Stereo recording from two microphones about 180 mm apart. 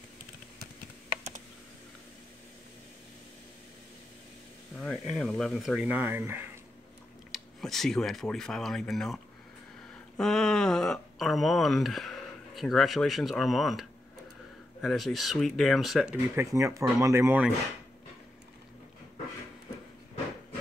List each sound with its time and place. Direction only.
4.7 s speech: centre (ahead or behind)
7.3 s speech: centre (ahead or behind)
16.3 s speech: 15° right (ahead or behind)